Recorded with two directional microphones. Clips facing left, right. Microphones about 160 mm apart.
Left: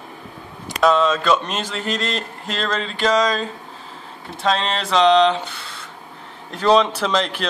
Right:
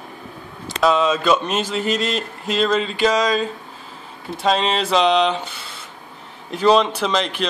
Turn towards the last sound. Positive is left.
turn(degrees=0)  # may be behind; listen again after turning